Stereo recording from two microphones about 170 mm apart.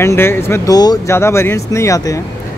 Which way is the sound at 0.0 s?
15° left (ahead or behind).